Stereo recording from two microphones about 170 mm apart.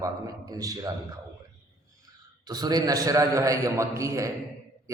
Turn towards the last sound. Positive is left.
turn(degrees=-20)  # may be behind; listen again after turning